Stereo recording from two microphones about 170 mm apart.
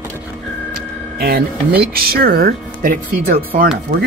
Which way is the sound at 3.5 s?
55° right (ahead or behind).